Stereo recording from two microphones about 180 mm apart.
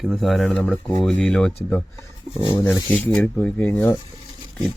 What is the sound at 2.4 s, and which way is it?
Speech, 20° left (ahead or behind).